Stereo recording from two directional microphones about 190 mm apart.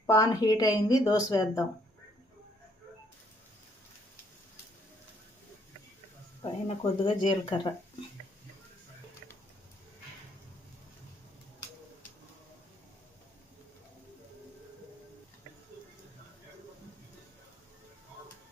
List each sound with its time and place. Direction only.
0.0 s a woman's voice: 15° left (ahead or behind)
6.4 s a woman's voice: 30° left (ahead or behind)